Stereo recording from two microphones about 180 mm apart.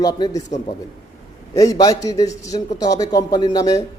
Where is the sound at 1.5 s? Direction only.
20° left (ahead or behind).